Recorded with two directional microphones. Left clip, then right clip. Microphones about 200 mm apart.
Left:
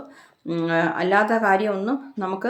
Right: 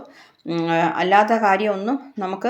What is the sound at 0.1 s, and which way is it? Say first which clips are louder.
Speech: right 3 dB; centre (ahead or behind).